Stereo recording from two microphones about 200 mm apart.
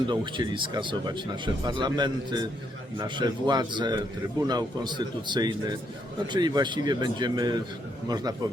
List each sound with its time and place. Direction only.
0.1 s speech: 25° right (ahead or behind)